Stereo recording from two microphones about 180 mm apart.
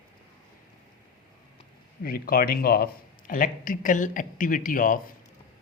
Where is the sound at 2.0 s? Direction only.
55° left (ahead or behind).